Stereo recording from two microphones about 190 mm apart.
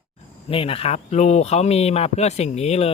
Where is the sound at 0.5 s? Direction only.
30° left (ahead or behind).